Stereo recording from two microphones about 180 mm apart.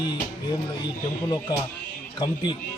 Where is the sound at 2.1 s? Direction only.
25° left (ahead or behind).